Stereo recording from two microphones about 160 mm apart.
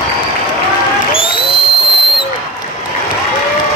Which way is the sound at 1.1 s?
30° left (ahead or behind).